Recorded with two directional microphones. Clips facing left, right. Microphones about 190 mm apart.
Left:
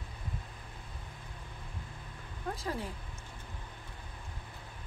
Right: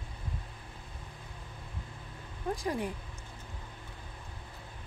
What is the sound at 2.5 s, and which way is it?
Speech, 15° right (ahead or behind).